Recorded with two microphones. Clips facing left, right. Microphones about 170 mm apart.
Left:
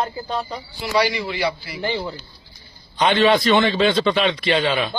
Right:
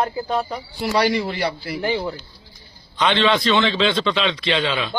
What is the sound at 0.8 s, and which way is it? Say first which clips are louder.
Speech: right 1 dB; 50° right (ahead or behind).